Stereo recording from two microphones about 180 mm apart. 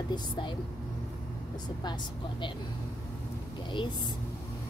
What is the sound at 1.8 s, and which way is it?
Speech, 25° left (ahead or behind).